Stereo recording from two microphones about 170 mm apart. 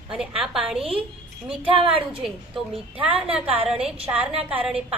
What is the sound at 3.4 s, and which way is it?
Speech, 35° right (ahead or behind).